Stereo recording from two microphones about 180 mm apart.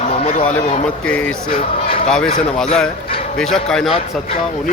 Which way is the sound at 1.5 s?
30° left (ahead or behind).